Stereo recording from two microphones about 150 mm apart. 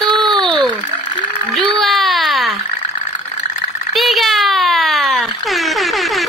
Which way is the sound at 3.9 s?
Centre (ahead or behind).